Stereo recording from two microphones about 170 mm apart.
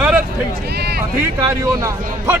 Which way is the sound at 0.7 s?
70° right (ahead or behind).